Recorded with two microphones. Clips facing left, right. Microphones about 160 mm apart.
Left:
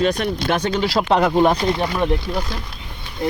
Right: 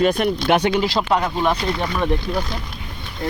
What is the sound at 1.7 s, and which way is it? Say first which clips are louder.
Speech: left 2 dB; 20° left (ahead or behind).